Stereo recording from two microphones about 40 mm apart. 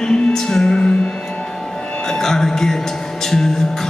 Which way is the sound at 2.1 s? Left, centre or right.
Centre.